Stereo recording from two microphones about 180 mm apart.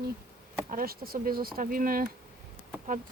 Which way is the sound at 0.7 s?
55° right (ahead or behind).